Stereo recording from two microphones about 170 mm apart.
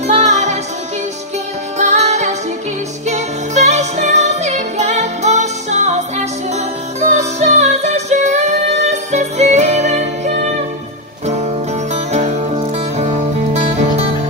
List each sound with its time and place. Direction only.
0.0 s music: 45° right (ahead or behind)
1.8 s music: 40° right (ahead or behind)
11.9 s music: 40° right (ahead or behind)